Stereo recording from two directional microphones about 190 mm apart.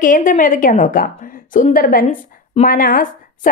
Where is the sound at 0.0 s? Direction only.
45° left (ahead or behind).